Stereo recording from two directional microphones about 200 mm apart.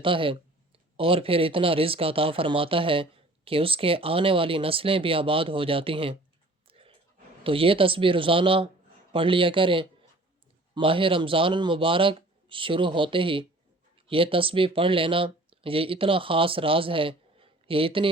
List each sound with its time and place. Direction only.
0.0 s speech: 25° right (ahead or behind)
6.7 s whispering: 25° right (ahead or behind)
7.4 s speech: 25° right (ahead or behind)